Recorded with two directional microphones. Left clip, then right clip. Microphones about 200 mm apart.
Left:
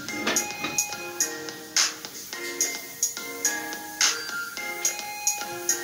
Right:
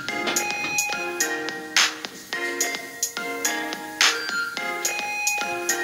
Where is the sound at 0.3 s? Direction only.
40° right (ahead or behind).